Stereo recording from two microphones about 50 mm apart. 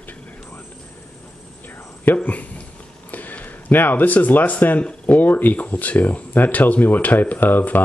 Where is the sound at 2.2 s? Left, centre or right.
Left.